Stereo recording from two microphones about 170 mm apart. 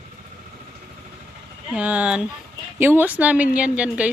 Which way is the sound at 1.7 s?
10° right (ahead or behind).